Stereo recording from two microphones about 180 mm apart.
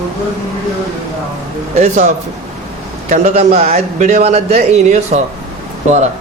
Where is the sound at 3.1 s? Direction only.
40° right (ahead or behind).